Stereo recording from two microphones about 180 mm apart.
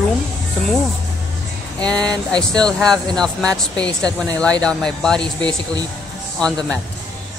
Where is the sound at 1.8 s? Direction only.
5° left (ahead or behind).